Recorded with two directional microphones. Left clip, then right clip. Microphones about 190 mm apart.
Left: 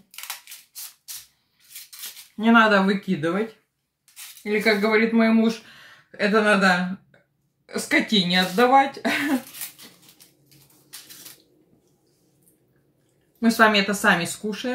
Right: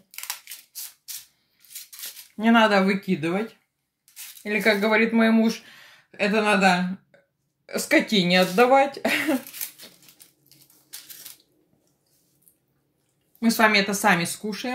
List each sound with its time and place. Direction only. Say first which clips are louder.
2.3 s speech: left 2 dB; 35° right (ahead or behind)
4.4 s speech: left 1 dB; 40° right (ahead or behind)
13.4 s speech: left 2 dB; 35° right (ahead or behind)